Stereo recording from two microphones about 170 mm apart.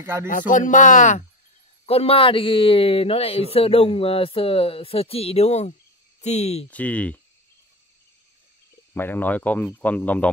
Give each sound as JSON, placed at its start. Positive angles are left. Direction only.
{"t": 0.0, "sound": "music", "side_deg": -15}
{"t": 0.3, "sound": "speech", "side_deg": 50}
{"t": 1.9, "sound": "speech", "side_deg": 35}
{"t": 6.7, "sound": "speech", "side_deg": 10}
{"t": 8.9, "sound": "speech", "side_deg": 10}